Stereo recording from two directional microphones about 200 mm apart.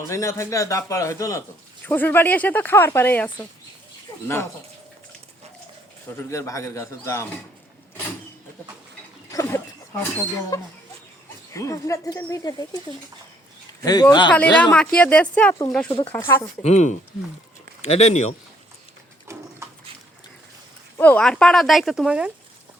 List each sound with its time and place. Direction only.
0.0 s a man's voice: 15° left (ahead or behind)
6.1 s a man's voice: 15° left (ahead or behind)
9.3 s a sound: 15° left (ahead or behind)
10.5 s a man's voice: 15° left (ahead or behind)
13.8 s speech: 20° left (ahead or behind)
14.3 s a man's voice: 5° left (ahead or behind)
16.6 s speech: 35° left (ahead or behind)
19.3 s pigeon: 15° right (ahead or behind)
21.0 s speech: 5° left (ahead or behind)